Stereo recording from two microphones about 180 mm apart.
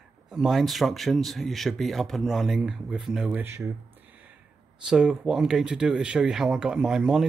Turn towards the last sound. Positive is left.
turn(degrees=-5)  # may be behind; listen again after turning